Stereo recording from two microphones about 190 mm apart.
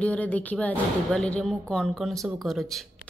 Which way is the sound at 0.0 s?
5° left (ahead or behind).